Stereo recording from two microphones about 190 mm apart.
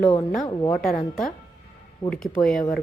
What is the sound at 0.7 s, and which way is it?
Speech, 5° left (ahead or behind).